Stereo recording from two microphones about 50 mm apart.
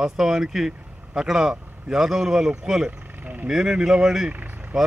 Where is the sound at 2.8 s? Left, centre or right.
Right.